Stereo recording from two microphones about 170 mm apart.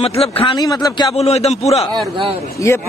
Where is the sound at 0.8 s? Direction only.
25° left (ahead or behind).